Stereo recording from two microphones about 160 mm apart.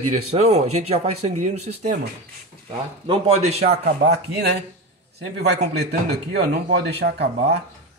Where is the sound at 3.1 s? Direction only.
40° right (ahead or behind).